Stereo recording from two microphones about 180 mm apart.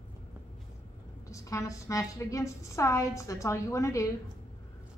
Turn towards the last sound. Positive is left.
turn(degrees=15)  # may be behind; listen again after turning